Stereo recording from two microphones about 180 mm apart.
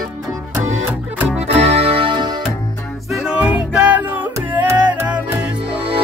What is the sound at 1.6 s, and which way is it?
Music, 35° right (ahead or behind).